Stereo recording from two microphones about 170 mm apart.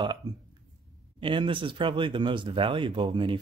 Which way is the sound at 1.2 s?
30° right (ahead or behind).